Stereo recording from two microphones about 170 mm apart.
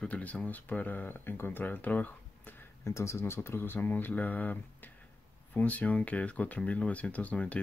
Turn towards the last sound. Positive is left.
turn(degrees=10)  # may be behind; listen again after turning